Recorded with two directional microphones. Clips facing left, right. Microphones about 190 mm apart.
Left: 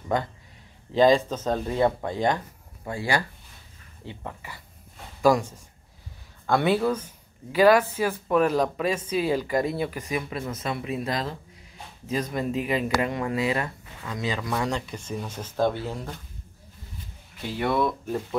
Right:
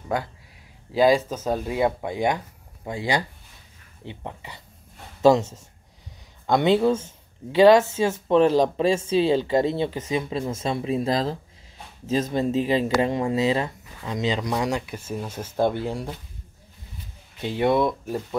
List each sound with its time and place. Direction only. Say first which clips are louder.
0.1 s speech: left 1 dB; 5° right (ahead or behind)
17.4 s speech: right 4 dB; 20° right (ahead or behind)